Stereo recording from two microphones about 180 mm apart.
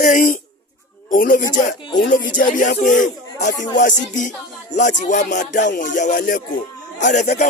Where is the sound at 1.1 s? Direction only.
50° left (ahead or behind).